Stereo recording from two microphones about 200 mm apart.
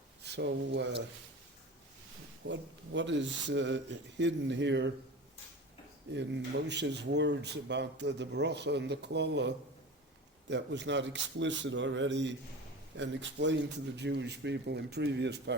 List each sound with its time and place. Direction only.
0.2 s speech: 60° right (ahead or behind)
2.5 s speech: 65° right (ahead or behind)
6.1 s speech: 60° right (ahead or behind)